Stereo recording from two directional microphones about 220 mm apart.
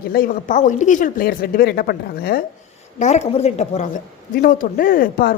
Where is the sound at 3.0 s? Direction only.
30° left (ahead or behind).